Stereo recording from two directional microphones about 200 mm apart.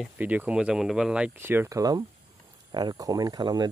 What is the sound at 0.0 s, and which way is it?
Speech, 10° right (ahead or behind).